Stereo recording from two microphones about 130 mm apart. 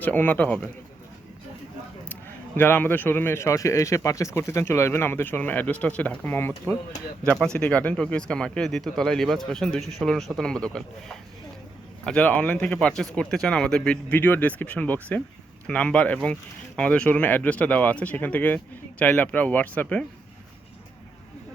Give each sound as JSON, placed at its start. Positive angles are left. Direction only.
{"t": 0.0, "sound": "speech", "side_deg": 15}
{"t": 2.6, "sound": "speech", "side_deg": 15}